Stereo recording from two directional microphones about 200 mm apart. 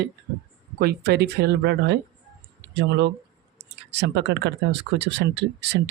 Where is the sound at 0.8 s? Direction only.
50° right (ahead or behind).